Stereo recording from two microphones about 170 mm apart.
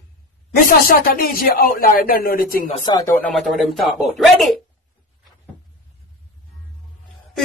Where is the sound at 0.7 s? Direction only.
60° left (ahead or behind).